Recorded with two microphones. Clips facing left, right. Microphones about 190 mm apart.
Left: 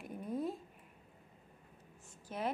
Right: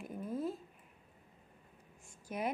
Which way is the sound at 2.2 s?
10° right (ahead or behind).